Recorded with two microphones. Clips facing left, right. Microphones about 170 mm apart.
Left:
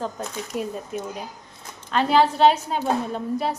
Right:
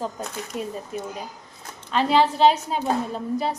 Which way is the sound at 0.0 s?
Centre (ahead or behind).